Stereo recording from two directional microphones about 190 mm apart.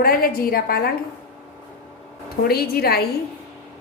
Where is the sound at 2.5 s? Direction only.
55° left (ahead or behind).